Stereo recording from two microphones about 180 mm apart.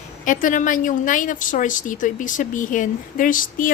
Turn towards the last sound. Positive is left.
turn(degrees=50)  # may be behind; listen again after turning